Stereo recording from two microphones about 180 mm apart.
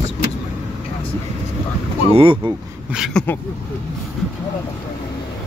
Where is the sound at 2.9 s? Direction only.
Centre (ahead or behind).